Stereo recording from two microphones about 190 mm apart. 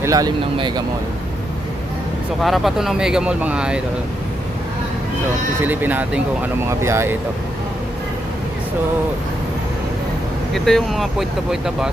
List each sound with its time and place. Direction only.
0.0 s speech: 20° right (ahead or behind)
2.4 s speech: centre (ahead or behind)
5.6 s speech: 10° right (ahead or behind)
10.5 s speech: centre (ahead or behind)